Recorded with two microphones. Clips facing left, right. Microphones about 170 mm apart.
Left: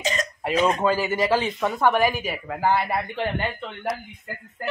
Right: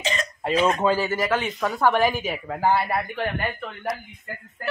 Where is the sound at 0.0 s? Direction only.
40° left (ahead or behind).